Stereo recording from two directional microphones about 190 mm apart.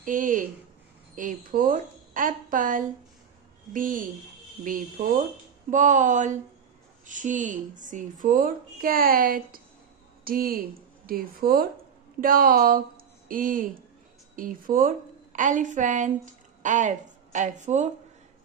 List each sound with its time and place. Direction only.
0.0 s a woman's voice: 45° right (ahead or behind)